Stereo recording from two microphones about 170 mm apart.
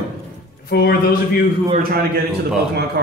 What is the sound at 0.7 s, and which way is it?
Speech, 65° left (ahead or behind).